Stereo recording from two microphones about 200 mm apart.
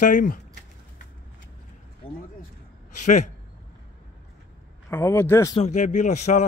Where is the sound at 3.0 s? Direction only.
35° left (ahead or behind).